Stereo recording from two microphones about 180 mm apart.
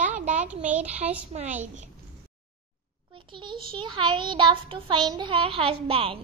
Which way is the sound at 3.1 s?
25° right (ahead or behind).